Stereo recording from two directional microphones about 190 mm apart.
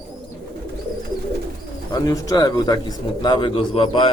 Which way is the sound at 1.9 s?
20° left (ahead or behind).